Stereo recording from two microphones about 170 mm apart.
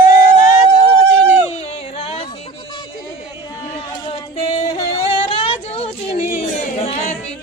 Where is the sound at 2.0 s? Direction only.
35° left (ahead or behind).